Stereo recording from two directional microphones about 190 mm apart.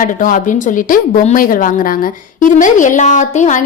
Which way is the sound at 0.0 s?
45° left (ahead or behind).